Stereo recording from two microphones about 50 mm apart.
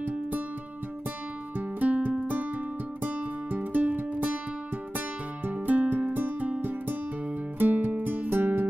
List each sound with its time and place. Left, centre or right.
1.6 s music: right
2.2 s music: right
7.5 s music: right